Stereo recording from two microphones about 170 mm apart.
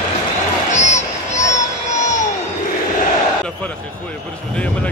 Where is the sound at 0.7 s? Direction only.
45° left (ahead or behind).